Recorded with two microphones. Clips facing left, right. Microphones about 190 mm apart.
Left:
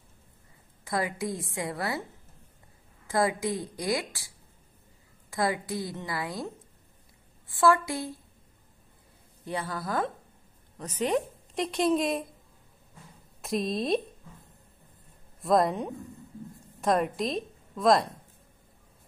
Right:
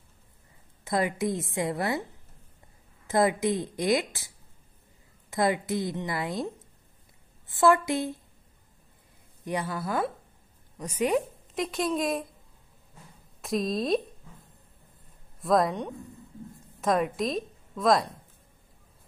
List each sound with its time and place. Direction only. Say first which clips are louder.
0.8 s speech: right 3 dB; 20° right (ahead or behind)
3.1 s speech: right 3 dB; 20° right (ahead or behind)
5.3 s speech: right 3 dB; 20° right (ahead or behind)
9.4 s a woman's voice: right 2 dB; 15° right (ahead or behind); by 12.3 s centre (ahead or behind)
13.4 s speech: right 1 dB; centre (ahead or behind)
15.4 s a woman's voice: even; centre (ahead or behind)